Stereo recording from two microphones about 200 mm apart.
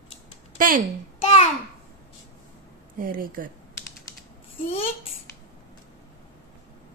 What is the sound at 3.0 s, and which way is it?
Speech, 45° right (ahead or behind).